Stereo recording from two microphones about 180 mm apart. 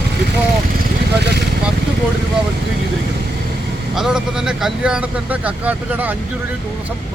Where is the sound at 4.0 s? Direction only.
5° right (ahead or behind).